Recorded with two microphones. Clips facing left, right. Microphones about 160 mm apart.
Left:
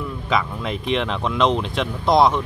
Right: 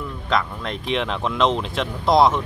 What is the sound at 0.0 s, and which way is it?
Speech, 5° left (ahead or behind).